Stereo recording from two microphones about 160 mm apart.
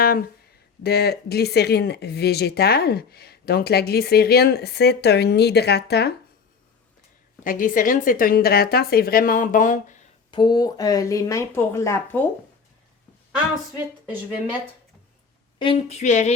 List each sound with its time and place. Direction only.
0.0 s a sound: 70° left (ahead or behind)
0.8 s speech: 85° left
7.4 s a woman's voice: 60° left (ahead or behind)
10.3 s speech: 25° left (ahead or behind)
15.5 s a woman's voice: 30° left (ahead or behind)
16.0 s speech: 45° left (ahead or behind)